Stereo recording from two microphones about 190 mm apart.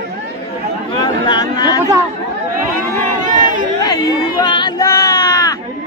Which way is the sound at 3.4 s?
45° right (ahead or behind).